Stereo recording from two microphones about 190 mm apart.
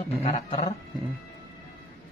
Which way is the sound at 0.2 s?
35° left (ahead or behind).